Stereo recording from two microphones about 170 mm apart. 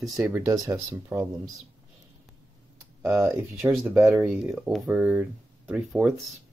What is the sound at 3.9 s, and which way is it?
Speech, 5° right (ahead or behind).